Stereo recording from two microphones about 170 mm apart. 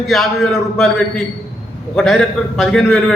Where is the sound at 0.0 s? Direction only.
Centre (ahead or behind).